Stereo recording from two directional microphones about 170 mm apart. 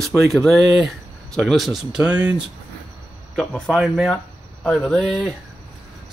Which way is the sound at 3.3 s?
5° left (ahead or behind).